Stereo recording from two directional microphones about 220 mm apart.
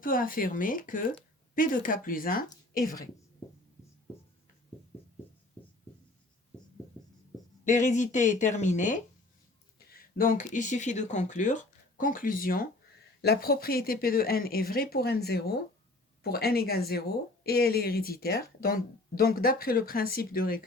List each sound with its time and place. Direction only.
0.0 s speech: 40° left (ahead or behind)
7.6 s speech: 35° left (ahead or behind)